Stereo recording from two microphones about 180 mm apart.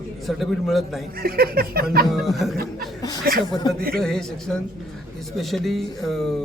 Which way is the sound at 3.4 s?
25° left (ahead or behind).